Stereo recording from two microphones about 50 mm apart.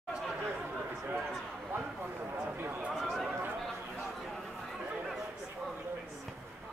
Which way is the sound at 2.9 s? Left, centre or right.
Centre.